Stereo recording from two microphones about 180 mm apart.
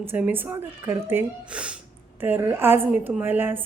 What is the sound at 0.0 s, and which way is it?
Speech, 10° right (ahead or behind).